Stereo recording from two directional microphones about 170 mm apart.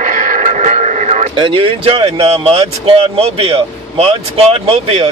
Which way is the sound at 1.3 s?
30° right (ahead or behind).